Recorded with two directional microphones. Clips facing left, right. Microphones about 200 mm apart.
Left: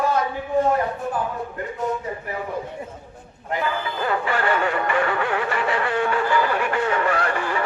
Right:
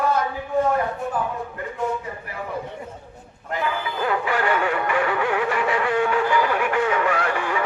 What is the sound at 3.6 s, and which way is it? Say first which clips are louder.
Music: right 1 dB; 5° right (ahead or behind).